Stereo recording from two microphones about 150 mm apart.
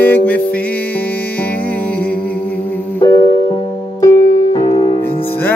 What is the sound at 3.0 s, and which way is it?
Music, 20° left (ahead or behind).